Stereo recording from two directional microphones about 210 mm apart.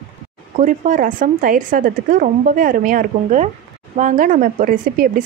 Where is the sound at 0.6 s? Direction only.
40° right (ahead or behind).